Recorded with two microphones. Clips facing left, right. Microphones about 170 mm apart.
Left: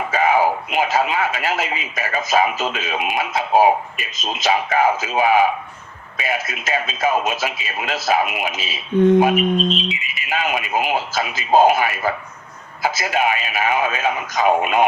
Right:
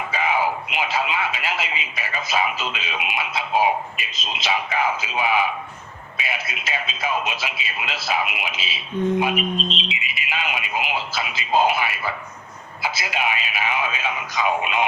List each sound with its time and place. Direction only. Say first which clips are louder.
0.1 s speech: left 6 dB; 45° left (ahead or behind)